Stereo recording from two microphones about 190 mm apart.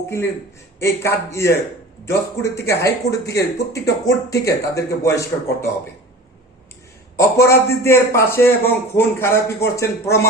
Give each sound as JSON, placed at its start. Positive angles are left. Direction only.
{"t": 0.8, "sound": "a man's voice", "side_deg": 15}
{"t": 7.2, "sound": "a man's voice", "side_deg": 15}